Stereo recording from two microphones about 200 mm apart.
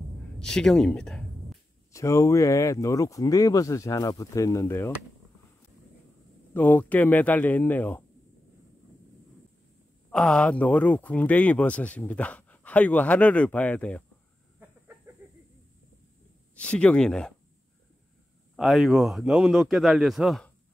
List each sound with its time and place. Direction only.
0.4 s a sound: 5° left (ahead or behind)
1.9 s speech: 15° left (ahead or behind)
6.5 s speech: 10° left (ahead or behind)
10.1 s speech: 5° left (ahead or behind)
15.2 s a sound: 10° right (ahead or behind)
16.5 s a man's voice: 5° left (ahead or behind)
18.6 s a man's voice: centre (ahead or behind)